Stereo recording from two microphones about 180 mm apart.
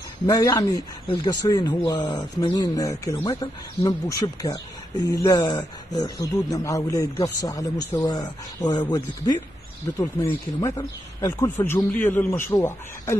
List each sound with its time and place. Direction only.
0.3 s speech: 20° left (ahead or behind)
10.6 s a man's voice: 20° left (ahead or behind)